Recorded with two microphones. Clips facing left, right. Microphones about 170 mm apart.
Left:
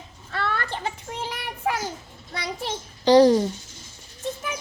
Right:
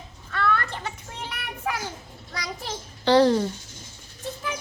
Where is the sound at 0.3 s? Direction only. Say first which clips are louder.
Right 2 dB; 30° left (ahead or behind).